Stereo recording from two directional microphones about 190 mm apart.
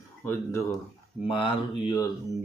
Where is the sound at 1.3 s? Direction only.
25° left (ahead or behind).